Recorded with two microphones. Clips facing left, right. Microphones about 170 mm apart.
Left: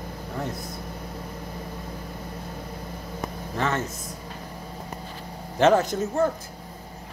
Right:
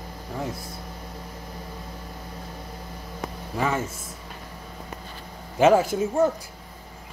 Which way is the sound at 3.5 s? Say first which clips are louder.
Right 1 dB; 10° right (ahead or behind).